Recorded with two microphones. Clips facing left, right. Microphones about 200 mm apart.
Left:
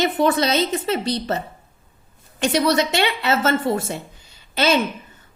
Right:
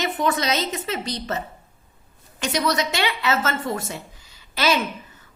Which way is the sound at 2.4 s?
30° left (ahead or behind).